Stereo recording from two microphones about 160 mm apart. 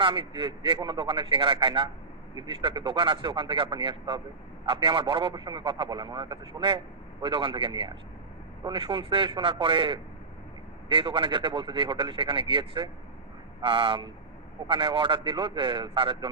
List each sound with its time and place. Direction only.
0.0 s a man's voice: 30° right (ahead or behind)